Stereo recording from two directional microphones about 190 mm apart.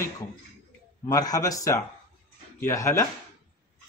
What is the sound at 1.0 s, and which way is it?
A man's voice, 20° left (ahead or behind).